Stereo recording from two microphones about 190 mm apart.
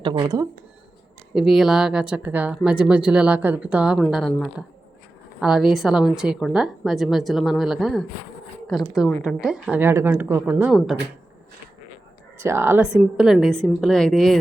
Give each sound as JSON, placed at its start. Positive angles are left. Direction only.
{"t": 0.0, "sound": "speech", "side_deg": -25}
{"t": 1.3, "sound": "a woman's voice", "side_deg": 0}
{"t": 12.4, "sound": "speech", "side_deg": -15}